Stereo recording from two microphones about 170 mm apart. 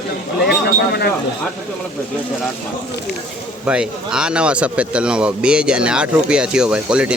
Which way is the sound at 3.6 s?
5° right (ahead or behind).